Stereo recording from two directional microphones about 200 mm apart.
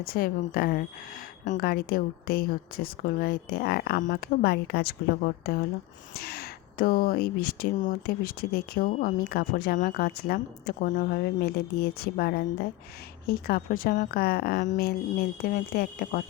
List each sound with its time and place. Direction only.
0.0 s speech: 45° left (ahead or behind)